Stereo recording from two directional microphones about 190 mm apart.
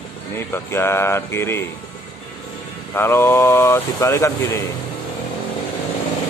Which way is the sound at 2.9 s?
10° left (ahead or behind).